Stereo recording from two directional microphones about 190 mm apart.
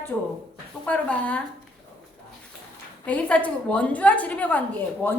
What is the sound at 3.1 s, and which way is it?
A woman's voice, 5° left (ahead or behind).